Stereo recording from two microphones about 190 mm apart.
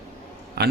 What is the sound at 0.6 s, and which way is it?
Speech, 60° right (ahead or behind).